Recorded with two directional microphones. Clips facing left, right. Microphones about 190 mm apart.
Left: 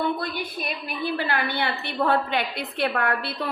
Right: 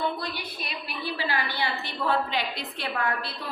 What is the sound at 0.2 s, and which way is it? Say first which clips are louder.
A woman's voice: left 5 dB; 50° left (ahead or behind).